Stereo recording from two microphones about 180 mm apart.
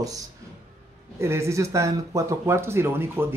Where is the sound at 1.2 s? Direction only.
15° right (ahead or behind).